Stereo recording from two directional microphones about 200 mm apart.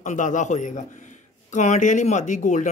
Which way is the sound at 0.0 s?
40° left (ahead or behind).